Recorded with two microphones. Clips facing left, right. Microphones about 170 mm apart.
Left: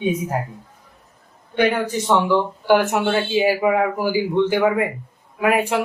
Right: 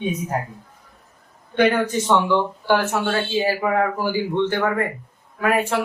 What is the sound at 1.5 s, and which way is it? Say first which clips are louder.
Speech: right 1 dB; 5° left (ahead or behind).